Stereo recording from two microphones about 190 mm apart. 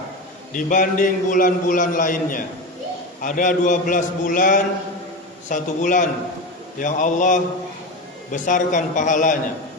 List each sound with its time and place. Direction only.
0.5 s a man's voice: 45° left (ahead or behind)